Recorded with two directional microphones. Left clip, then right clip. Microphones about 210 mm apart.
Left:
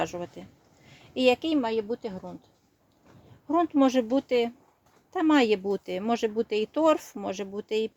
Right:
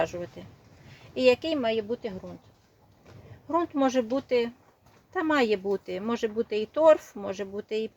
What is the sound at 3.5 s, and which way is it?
Speech, 40° left (ahead or behind).